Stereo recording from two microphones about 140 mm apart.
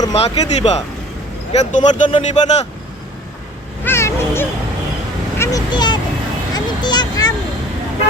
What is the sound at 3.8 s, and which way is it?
Speech, 20° left (ahead or behind).